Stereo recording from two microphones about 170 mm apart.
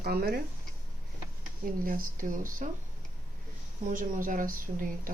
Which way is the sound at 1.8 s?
55° right (ahead or behind).